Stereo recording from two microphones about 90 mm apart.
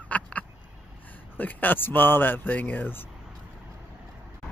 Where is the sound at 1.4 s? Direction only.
20° left (ahead or behind).